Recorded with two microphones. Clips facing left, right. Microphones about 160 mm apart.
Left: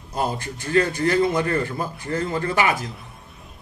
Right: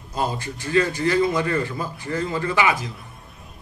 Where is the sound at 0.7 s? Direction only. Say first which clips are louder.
Even; 45° left (ahead or behind).